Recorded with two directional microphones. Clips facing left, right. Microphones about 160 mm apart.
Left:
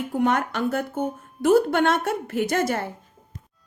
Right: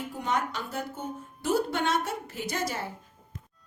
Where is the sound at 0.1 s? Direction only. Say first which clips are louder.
Left 8 dB; 60° left (ahead or behind).